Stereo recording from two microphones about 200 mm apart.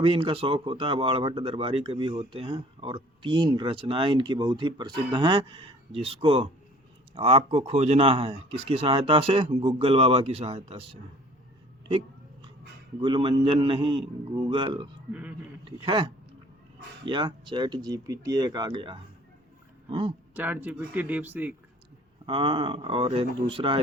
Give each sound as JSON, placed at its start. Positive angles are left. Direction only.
{"t": 0.0, "sound": "speech", "side_deg": -25}
{"t": 11.9, "sound": "hiccup", "side_deg": -25}
{"t": 13.0, "sound": "speech", "side_deg": -25}
{"t": 15.1, "sound": "speech", "side_deg": -5}
{"t": 15.6, "sound": "speech", "side_deg": -25}
{"t": 17.1, "sound": "speech", "side_deg": -25}
{"t": 20.3, "sound": "speech", "side_deg": -10}
{"t": 22.3, "sound": "speech", "side_deg": -25}